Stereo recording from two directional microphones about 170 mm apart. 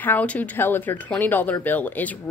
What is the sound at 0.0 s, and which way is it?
Speech, 10° left (ahead or behind).